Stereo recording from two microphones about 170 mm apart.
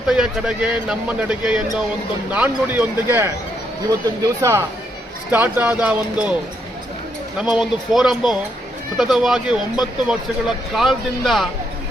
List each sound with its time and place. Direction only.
0.1 s a man's voice: 5° right (ahead or behind)
4.4 s speech: 15° right (ahead or behind)
7.3 s a man's voice: 5° right (ahead or behind)